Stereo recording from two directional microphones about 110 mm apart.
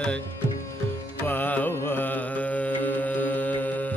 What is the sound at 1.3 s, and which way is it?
Music, 15° left (ahead or behind).